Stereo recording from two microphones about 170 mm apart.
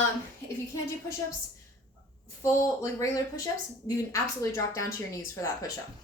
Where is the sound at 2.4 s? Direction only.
15° left (ahead or behind).